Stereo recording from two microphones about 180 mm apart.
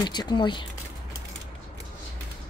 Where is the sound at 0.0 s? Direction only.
25° left (ahead or behind).